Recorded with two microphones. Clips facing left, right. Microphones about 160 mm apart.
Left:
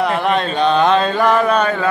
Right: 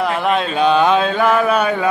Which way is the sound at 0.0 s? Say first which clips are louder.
Left 1 dB; centre (ahead or behind).